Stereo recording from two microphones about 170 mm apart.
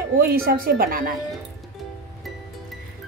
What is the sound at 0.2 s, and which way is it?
Speech, 65° right (ahead or behind).